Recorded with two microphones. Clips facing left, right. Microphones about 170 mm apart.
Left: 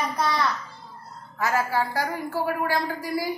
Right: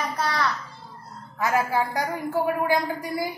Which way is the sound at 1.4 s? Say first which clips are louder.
Right 1 dB; 15° right (ahead or behind).